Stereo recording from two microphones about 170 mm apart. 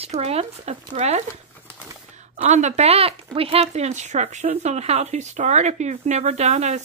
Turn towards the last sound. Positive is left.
turn(degrees=-45)  # may be behind; listen again after turning